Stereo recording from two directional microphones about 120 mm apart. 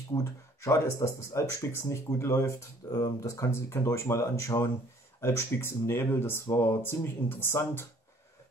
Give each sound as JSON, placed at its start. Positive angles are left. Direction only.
{"t": 0.1, "sound": "speech", "side_deg": 25}